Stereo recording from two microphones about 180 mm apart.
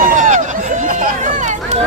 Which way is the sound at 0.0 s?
45° right (ahead or behind).